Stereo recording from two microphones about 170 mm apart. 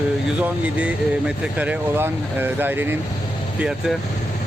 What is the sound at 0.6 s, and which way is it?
Speech, 10° right (ahead or behind).